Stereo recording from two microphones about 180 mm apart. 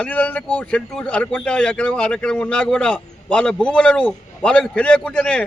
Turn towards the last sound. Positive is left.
turn(degrees=5)  # may be behind; listen again after turning